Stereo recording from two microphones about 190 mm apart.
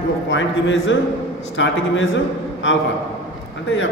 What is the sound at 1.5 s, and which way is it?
Mantra, 75° left (ahead or behind).